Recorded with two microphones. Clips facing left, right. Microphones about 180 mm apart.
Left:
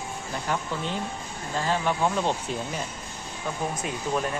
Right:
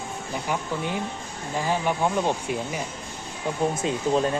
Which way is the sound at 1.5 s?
15° right (ahead or behind).